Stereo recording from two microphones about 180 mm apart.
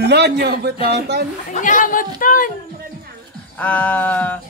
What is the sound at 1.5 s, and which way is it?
A woman's voice, 45° left (ahead or behind).